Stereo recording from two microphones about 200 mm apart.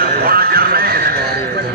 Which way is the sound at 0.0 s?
50° right (ahead or behind).